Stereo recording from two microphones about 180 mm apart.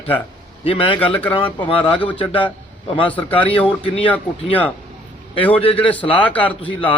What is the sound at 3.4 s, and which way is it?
A man's voice, 10° left (ahead or behind).